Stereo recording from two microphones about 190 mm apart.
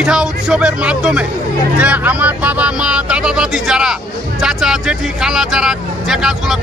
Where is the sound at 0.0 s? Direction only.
5° right (ahead or behind).